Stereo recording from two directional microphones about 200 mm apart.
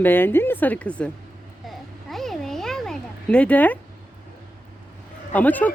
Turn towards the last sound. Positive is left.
turn(degrees=10)  # may be behind; listen again after turning